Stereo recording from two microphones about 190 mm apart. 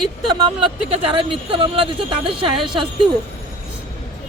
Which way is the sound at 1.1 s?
30° right (ahead or behind).